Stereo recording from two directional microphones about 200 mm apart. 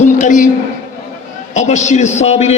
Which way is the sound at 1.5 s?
35° left (ahead or behind).